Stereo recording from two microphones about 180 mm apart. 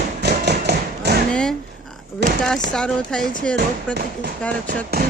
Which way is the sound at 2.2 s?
70° right (ahead or behind).